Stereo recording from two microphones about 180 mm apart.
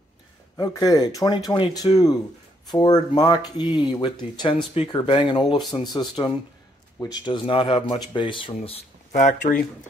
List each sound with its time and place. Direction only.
0.6 s speech: 20° left (ahead or behind); by 9.6 s 45° left (ahead or behind)